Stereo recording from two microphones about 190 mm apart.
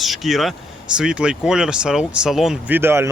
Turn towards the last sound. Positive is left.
turn(degrees=-15)  # may be behind; listen again after turning